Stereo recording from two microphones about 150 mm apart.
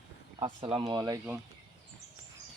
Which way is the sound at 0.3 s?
35° right (ahead or behind).